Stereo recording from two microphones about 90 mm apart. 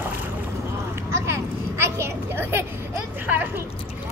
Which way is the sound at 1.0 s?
30° right (ahead or behind).